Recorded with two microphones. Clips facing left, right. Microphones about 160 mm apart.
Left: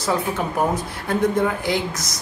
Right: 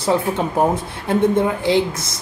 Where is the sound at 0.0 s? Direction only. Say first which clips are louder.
Right 4 dB; 25° right (ahead or behind).